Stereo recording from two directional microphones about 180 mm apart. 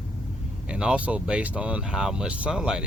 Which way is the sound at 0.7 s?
5° right (ahead or behind).